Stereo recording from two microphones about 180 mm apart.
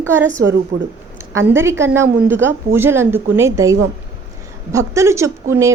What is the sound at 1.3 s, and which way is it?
A woman's voice, 15° right (ahead or behind).